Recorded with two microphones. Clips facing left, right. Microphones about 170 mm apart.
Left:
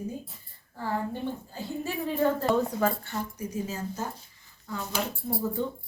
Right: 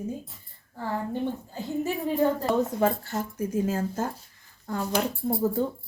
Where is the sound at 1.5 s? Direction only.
20° right (ahead or behind).